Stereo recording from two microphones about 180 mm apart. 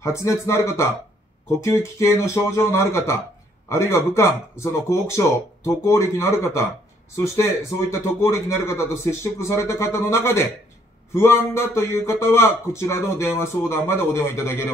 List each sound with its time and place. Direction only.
0.0 s speech: 15° left (ahead or behind)
7.9 s speech: 15° left (ahead or behind)